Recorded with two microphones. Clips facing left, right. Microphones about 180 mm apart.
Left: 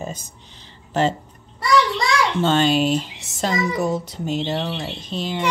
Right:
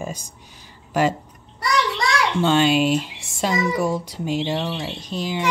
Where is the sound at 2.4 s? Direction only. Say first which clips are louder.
Right 1 dB; 10° right (ahead or behind).